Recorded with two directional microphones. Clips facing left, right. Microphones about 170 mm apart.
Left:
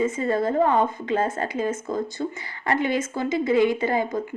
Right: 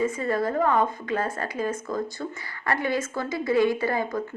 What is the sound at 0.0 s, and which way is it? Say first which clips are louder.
A woman's voice: left 2 dB; 25° left (ahead or behind).